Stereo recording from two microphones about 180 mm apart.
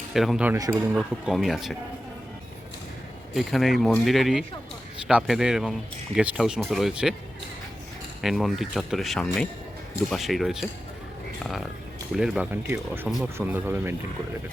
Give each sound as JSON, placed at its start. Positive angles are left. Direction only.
{"t": 0.1, "sound": "speech", "side_deg": 0}
{"t": 0.5, "sound": "speech", "side_deg": -15}
{"t": 0.9, "sound": "speech", "side_deg": 0}
{"t": 3.3, "sound": "speech", "side_deg": 0}
{"t": 8.2, "sound": "speech", "side_deg": 0}
{"t": 12.1, "sound": "speech", "side_deg": -5}